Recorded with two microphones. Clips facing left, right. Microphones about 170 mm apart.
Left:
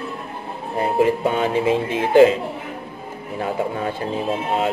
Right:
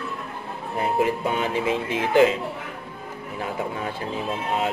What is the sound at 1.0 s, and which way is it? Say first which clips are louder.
A man's voice: left 7 dB; 30° left (ahead or behind).